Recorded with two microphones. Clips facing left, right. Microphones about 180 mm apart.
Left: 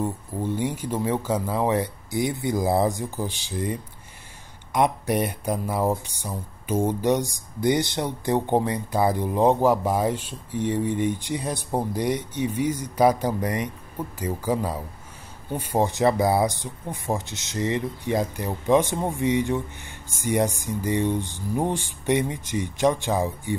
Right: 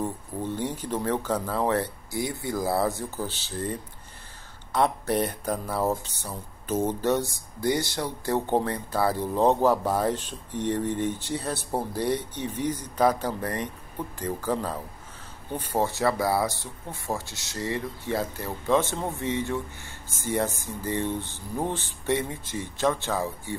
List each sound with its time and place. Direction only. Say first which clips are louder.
0.0 s speech: left 3 dB; 10° left (ahead or behind)